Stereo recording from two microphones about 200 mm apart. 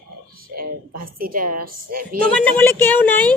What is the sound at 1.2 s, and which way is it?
Speech, 45° right (ahead or behind).